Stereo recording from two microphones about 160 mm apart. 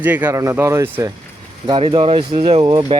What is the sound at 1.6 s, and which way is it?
Speech, 35° right (ahead or behind).